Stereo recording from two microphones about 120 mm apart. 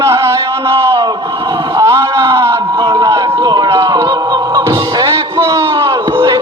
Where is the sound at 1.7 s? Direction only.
25° right (ahead or behind).